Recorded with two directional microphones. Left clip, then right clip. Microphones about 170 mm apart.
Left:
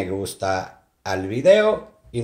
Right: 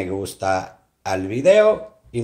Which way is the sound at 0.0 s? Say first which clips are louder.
Right 1 dB; 5° right (ahead or behind).